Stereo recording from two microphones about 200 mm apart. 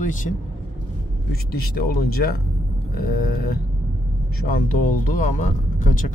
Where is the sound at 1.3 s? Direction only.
50° left (ahead or behind).